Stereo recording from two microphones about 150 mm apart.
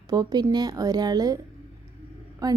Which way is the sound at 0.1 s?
25° right (ahead or behind).